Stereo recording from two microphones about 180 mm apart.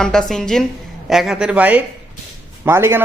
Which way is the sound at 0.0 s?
5° left (ahead or behind).